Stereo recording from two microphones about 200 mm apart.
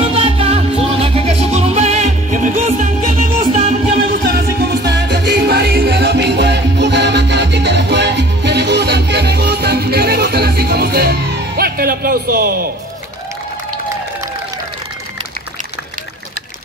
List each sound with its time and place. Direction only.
0.0 s music: 30° right (ahead or behind)
4.2 s music: 50° right (ahead or behind)